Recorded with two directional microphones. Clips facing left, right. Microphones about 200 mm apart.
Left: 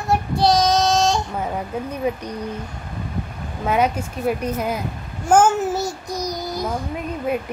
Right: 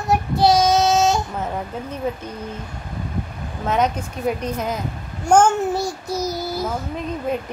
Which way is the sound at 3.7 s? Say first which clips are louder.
Left 1 dB; 10° left (ahead or behind).